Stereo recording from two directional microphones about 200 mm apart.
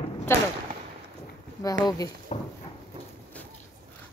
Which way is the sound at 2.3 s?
30° left (ahead or behind).